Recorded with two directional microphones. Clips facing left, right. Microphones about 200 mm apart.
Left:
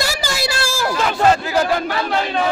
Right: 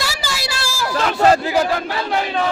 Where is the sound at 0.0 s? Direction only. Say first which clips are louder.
Left 4 dB; 45° left (ahead or behind).